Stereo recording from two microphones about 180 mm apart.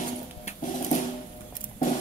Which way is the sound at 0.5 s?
45° left (ahead or behind).